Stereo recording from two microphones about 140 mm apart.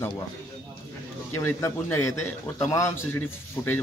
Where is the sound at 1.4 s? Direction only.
20° left (ahead or behind).